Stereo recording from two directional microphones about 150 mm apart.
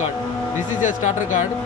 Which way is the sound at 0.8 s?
55° left (ahead or behind).